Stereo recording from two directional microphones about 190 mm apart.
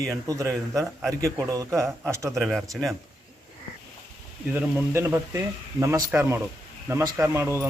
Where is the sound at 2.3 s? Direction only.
Centre (ahead or behind).